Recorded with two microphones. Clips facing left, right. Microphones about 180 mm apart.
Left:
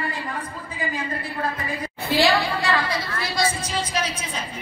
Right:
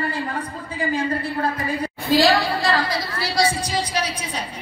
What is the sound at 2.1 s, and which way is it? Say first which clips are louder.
A woman's voice: right 3 dB; 35° right (ahead or behind).